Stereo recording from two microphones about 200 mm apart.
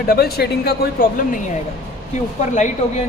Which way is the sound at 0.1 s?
50° left (ahead or behind).